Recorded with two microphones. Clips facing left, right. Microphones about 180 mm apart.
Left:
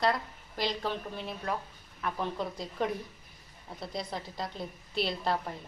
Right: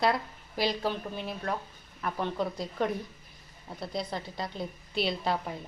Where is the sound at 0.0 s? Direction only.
10° right (ahead or behind).